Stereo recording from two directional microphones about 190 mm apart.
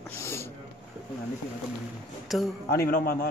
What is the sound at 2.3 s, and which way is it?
Speech, centre (ahead or behind).